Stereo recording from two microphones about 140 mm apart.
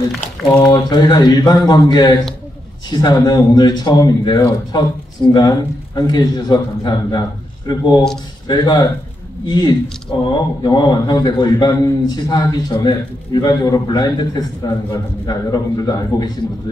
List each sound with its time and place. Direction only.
0.7 s a man's voice: 30° left (ahead or behind)